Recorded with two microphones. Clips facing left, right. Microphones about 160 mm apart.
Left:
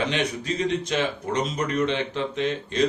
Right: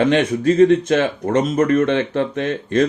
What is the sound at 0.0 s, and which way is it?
Speech, 55° right (ahead or behind).